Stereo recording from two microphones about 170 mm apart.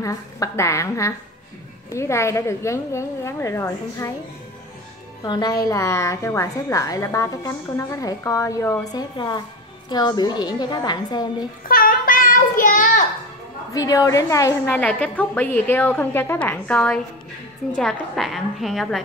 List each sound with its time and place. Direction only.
0.0 s a woman's voice: 20° left (ahead or behind)
5.2 s a woman's voice: 25° left (ahead or behind)
11.6 s child singing: 55° left (ahead or behind)
13.7 s a woman's voice: 20° left (ahead or behind)
14.8 s a woman's voice: 10° left (ahead or behind)